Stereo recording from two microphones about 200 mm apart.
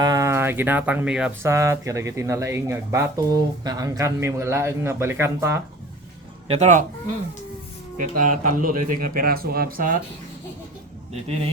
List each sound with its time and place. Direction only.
0.0 s speech: 15° right (ahead or behind)
6.5 s speech: 35° right (ahead or behind)
7.9 s speech: 40° right (ahead or behind)